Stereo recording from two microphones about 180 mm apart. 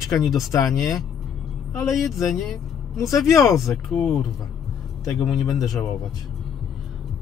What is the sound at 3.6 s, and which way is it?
Speech, centre (ahead or behind).